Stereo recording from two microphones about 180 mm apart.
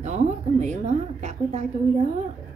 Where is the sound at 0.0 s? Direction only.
40° right (ahead or behind).